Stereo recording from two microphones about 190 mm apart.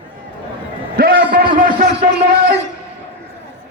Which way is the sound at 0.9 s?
50° right (ahead or behind).